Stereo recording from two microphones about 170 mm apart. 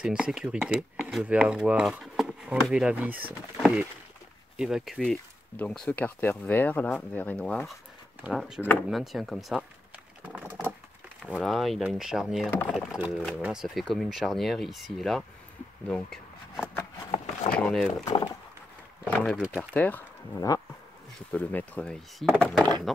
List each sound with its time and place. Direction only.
0.0 s speech: 5° right (ahead or behind)
10.2 s typing: 10° right (ahead or behind)
11.3 s speech: centre (ahead or behind)
19.0 s speech: 10° left (ahead or behind)
19.3 s speech: 5° right (ahead or behind)
19.7 s speech: 10° left (ahead or behind)
20.3 s speech: 20° left (ahead or behind)
21.3 s speech: 10° left (ahead or behind)